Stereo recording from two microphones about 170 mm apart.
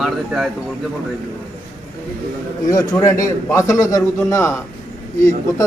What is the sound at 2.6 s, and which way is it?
A man's voice, 20° left (ahead or behind).